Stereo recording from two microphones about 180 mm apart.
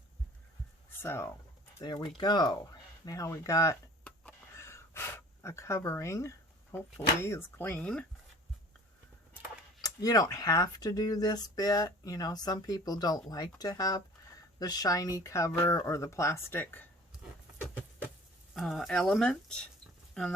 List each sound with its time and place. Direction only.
1.0 s speech: 15° left (ahead or behind)
1.8 s speech: 25° left (ahead or behind); by 8.0 s 5° left (ahead or behind)
9.8 s speech: 20° left (ahead or behind)
18.5 s speech: centre (ahead or behind)